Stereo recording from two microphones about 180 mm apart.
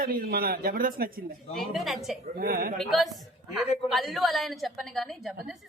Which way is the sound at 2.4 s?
55° right (ahead or behind).